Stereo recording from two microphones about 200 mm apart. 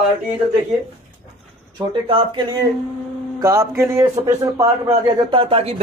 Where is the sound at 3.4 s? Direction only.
15° right (ahead or behind).